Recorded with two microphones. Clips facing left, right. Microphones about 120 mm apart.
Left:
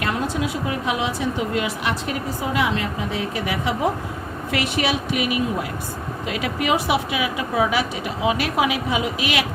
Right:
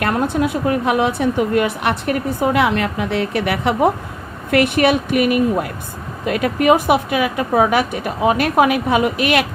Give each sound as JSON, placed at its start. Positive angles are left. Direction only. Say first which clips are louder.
{"t": 0.0, "sound": "a woman's voice", "louder": "right 6 dB", "side_deg": -55}